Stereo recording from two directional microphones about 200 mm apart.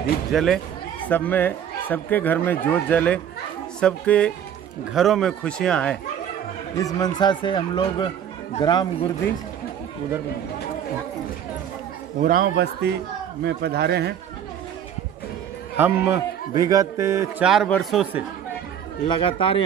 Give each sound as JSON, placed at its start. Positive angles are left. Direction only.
{"t": 0.3, "sound": "a man's voice", "side_deg": 0}
{"t": 6.8, "sound": "speech", "side_deg": 20}
{"t": 12.2, "sound": "speech", "side_deg": -45}
{"t": 15.8, "sound": "a man's voice", "side_deg": -10}
{"t": 17.5, "sound": "a man's voice", "side_deg": 0}
{"t": 19.0, "sound": "speech", "side_deg": 25}